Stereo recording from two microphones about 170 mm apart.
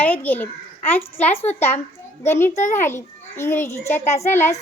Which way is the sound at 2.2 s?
15° left (ahead or behind).